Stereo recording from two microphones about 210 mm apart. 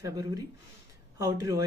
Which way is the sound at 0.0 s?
15° right (ahead or behind).